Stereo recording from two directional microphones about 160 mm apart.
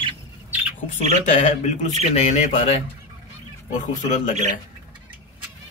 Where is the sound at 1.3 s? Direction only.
50° left (ahead or behind).